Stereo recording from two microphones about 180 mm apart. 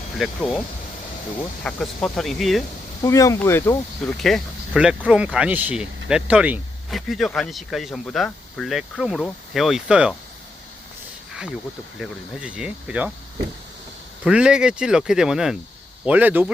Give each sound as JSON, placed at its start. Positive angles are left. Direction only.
{"t": 0.2, "sound": "speech", "side_deg": 0}
{"t": 1.6, "sound": "speech", "side_deg": 5}
{"t": 3.0, "sound": "speech", "side_deg": 15}
{"t": 4.0, "sound": "speech", "side_deg": 0}
{"t": 11.9, "sound": "speech", "side_deg": -5}
{"t": 14.3, "sound": "speech", "side_deg": -5}